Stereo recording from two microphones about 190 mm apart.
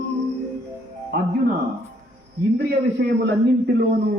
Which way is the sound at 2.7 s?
60° right (ahead or behind).